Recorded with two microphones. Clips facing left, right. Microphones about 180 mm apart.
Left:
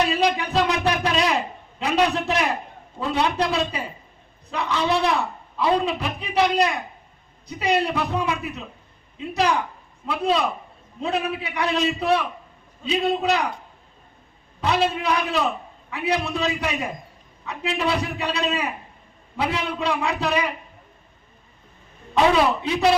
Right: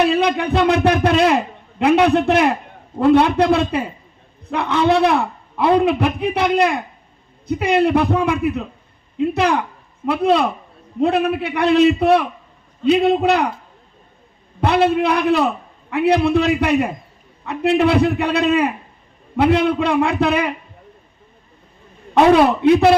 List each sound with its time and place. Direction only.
0.0 s a sound: 60° right (ahead or behind)
1.8 s a man's voice: 60° right (ahead or behind)
14.6 s a man's voice: 60° right (ahead or behind)
22.1 s a man's voice: 60° right (ahead or behind)